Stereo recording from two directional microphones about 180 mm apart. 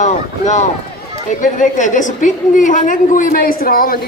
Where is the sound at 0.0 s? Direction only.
40° left (ahead or behind).